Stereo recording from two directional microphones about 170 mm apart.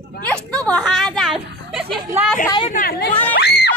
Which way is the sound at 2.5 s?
30° left (ahead or behind).